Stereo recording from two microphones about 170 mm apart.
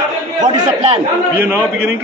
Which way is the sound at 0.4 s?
35° right (ahead or behind).